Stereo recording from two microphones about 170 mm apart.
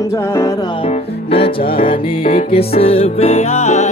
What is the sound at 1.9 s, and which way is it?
Music, 50° left (ahead or behind).